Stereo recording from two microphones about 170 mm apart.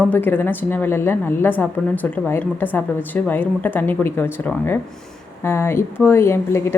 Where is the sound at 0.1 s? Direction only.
10° left (ahead or behind).